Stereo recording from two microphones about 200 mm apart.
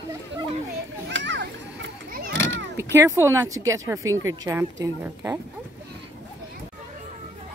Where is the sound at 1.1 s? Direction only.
65° right (ahead or behind).